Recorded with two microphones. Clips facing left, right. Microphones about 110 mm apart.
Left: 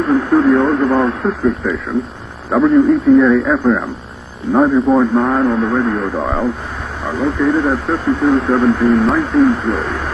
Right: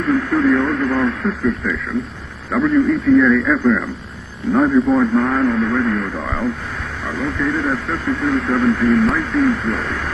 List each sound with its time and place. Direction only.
0.0 s a man's voice: 30° left (ahead or behind)